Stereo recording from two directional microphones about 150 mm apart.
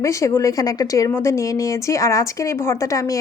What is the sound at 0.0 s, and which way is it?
Speech, 20° left (ahead or behind).